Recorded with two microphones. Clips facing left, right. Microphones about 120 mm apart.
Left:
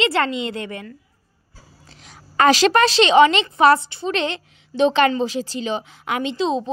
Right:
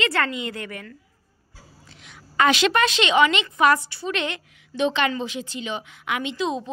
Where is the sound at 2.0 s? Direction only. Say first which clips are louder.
Left 4 dB; 35° left (ahead or behind).